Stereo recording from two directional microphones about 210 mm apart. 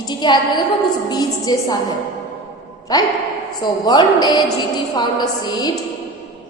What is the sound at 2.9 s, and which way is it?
A woman's voice, 20° left (ahead or behind).